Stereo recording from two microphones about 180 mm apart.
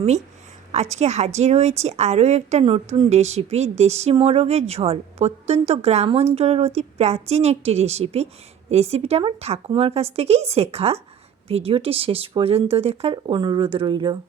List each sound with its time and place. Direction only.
0.7 s a woman's voice: 40° right (ahead or behind)